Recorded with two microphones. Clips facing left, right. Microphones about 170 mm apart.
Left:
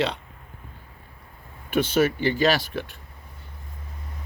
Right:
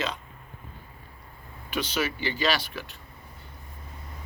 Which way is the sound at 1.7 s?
55° left (ahead or behind).